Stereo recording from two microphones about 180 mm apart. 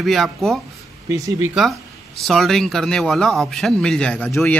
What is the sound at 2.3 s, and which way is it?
Speech, centre (ahead or behind).